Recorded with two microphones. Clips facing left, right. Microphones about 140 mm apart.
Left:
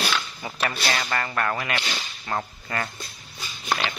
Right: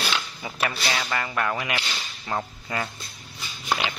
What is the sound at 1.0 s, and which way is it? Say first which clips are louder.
Speech: left 1 dB; 5° right (ahead or behind).